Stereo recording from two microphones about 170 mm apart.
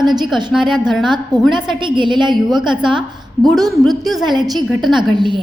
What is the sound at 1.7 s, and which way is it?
Speech, 30° right (ahead or behind).